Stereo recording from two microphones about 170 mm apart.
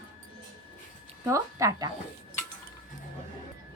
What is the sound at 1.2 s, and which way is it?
Speech, 15° right (ahead or behind).